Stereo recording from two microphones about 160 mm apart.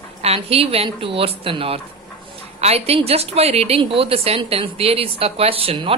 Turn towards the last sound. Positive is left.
turn(degrees=-35)  # may be behind; listen again after turning